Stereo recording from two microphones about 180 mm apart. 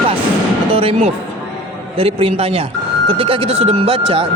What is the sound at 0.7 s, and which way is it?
Speech, 30° right (ahead or behind).